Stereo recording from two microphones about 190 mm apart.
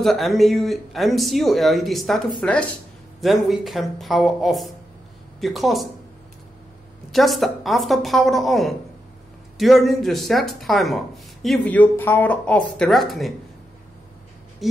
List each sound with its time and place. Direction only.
0.0 s speech: centre (ahead or behind)
7.1 s speech: centre (ahead or behind)
14.6 s a sound: centre (ahead or behind)